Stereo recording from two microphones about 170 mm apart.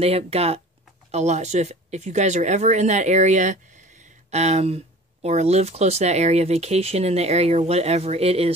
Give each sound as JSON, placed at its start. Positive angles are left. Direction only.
{"t": 0.0, "sound": "speech", "side_deg": -35}